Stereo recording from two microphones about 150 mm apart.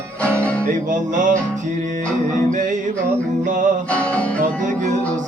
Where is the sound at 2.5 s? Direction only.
60° right (ahead or behind).